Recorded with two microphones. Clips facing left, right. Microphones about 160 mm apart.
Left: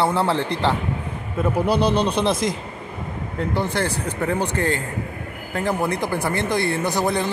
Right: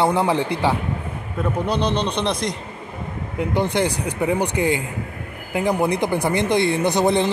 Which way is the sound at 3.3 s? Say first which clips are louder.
Right 3 dB; 15° right (ahead or behind).